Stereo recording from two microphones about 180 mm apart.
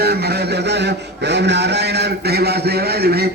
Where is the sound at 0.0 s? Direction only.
60° right (ahead or behind).